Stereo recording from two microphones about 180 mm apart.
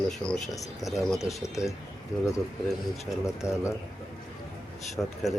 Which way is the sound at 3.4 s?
15° left (ahead or behind).